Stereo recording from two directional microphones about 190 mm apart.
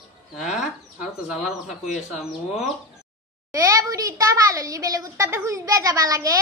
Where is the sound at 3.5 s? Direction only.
15° right (ahead or behind).